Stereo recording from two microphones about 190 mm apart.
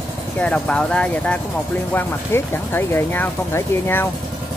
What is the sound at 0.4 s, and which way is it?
Speech, 5° left (ahead or behind).